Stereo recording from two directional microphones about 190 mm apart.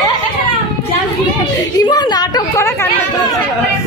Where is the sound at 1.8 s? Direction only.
20° left (ahead or behind).